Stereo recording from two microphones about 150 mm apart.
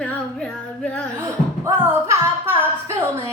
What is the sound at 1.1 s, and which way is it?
Music, 15° right (ahead or behind).